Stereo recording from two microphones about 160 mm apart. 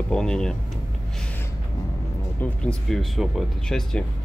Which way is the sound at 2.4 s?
5° left (ahead or behind).